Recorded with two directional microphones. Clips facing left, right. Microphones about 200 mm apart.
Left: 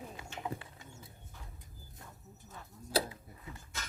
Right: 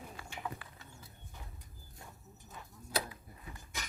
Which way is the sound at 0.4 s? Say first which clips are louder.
Left 4 dB; 25° left (ahead or behind).